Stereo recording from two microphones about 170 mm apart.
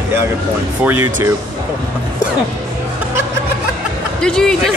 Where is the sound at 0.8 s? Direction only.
15° right (ahead or behind).